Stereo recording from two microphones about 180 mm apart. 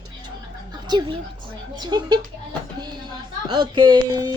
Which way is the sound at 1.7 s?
25° right (ahead or behind).